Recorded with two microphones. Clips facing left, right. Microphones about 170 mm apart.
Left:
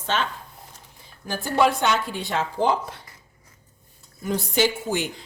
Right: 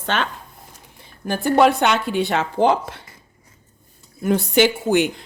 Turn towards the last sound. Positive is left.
turn(degrees=-65)  # may be behind; listen again after turning